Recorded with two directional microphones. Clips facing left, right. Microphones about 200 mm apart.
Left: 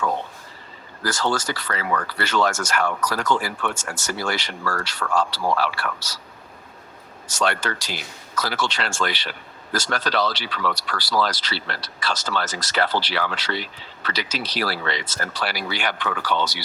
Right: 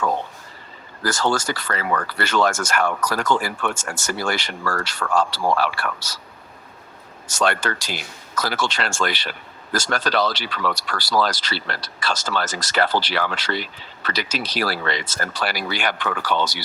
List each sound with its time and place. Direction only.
1.0 s speech: 45° right (ahead or behind)
7.3 s speech: 50° right (ahead or behind)